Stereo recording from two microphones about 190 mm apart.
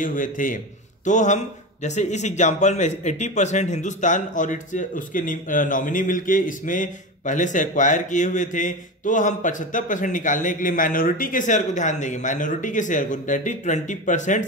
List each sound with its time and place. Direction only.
0.0 s a man's voice: 45° left (ahead or behind)